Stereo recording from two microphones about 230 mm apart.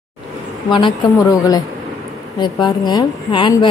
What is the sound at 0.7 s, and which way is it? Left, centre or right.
Speech, centre.